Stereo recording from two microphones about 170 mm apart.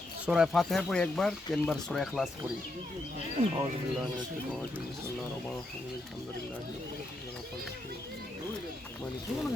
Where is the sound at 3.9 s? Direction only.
Centre (ahead or behind).